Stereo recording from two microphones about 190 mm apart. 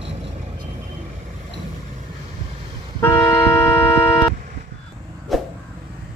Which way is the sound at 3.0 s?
10° left (ahead or behind).